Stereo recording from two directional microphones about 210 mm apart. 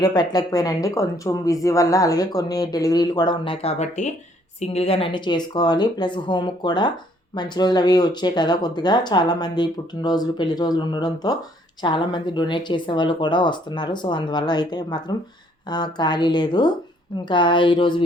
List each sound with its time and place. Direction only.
0.0 s speech: 20° left (ahead or behind)